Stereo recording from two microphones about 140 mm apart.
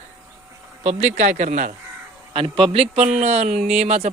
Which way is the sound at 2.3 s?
40° right (ahead or behind).